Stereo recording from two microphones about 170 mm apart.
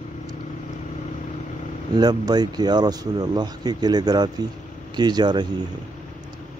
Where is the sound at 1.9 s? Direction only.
25° right (ahead or behind).